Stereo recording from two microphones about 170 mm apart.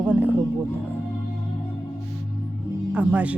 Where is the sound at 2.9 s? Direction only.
10° right (ahead or behind).